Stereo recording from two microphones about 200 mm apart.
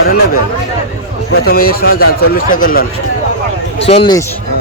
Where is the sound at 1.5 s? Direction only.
50° left (ahead or behind).